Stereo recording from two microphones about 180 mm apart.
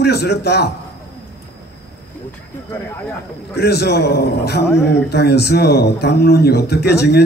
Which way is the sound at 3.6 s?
65° left (ahead or behind).